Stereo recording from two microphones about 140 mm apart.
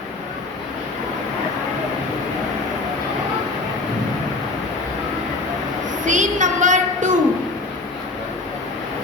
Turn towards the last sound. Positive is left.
turn(degrees=-65)  # may be behind; listen again after turning